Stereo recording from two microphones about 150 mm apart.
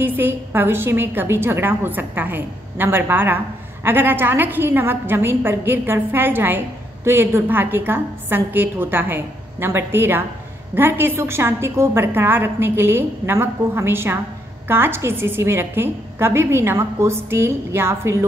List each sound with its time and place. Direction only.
0.0 s a woman's voice: 15° right (ahead or behind)